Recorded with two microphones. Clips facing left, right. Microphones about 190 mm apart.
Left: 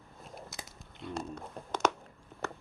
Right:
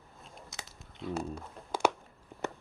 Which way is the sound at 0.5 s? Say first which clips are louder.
Left 1 dB; centre (ahead or behind).